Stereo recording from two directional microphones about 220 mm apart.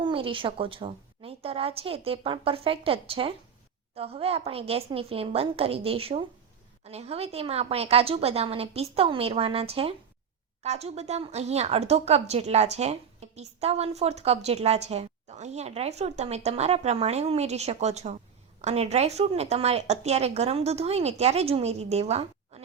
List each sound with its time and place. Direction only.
0.0 s a woman's voice: 25° right (ahead or behind)